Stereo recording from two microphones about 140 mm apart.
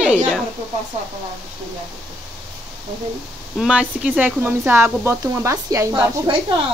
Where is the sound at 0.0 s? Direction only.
5° right (ahead or behind).